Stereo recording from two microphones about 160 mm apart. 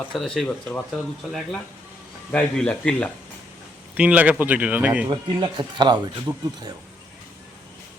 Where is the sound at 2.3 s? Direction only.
5° left (ahead or behind).